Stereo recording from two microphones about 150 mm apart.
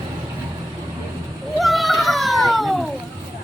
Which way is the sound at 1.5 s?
Centre (ahead or behind).